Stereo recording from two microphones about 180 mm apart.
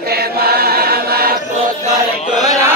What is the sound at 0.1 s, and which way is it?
Choir, 60° right (ahead or behind).